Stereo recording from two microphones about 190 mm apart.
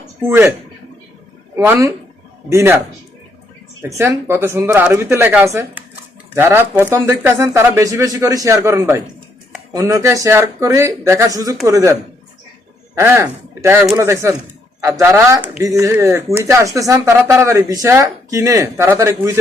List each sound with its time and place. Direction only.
0.2 s speech: 10° right (ahead or behind)
1.5 s speech: 20° right (ahead or behind)
13.0 s speech: 15° right (ahead or behind)